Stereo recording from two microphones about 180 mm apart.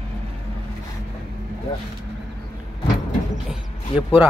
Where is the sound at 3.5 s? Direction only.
5° right (ahead or behind).